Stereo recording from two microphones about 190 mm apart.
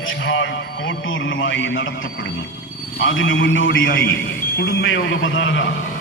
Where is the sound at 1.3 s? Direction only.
85° left.